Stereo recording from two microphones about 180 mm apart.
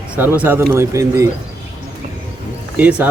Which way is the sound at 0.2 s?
10° right (ahead or behind).